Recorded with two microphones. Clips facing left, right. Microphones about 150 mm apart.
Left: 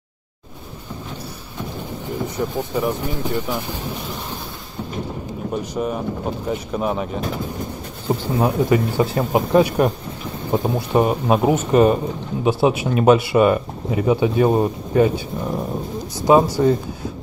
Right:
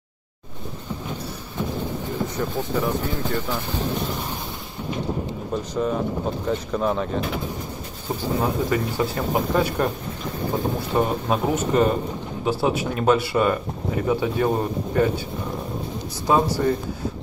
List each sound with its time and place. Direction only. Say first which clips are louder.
2.5 s speech: left 2 dB; 15° left (ahead or behind)
5.5 s speech: left 1 dB; 15° left (ahead or behind)
8.4 s speech: left 6 dB; 20° left (ahead or behind)
16.3 s speech: left 6 dB; 20° left (ahead or behind)